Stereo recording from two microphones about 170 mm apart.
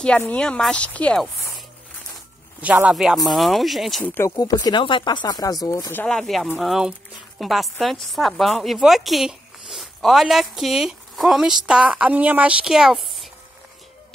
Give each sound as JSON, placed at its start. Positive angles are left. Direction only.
{"t": 0.0, "sound": "speech", "side_deg": 5}
{"t": 2.6, "sound": "speech", "side_deg": -5}
{"t": 4.0, "sound": "speech", "side_deg": 10}
{"t": 4.4, "sound": "speech", "side_deg": 25}
{"t": 6.0, "sound": "speech", "side_deg": 0}